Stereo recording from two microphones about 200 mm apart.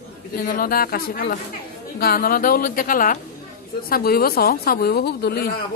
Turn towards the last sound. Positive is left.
turn(degrees=50)  # may be behind; listen again after turning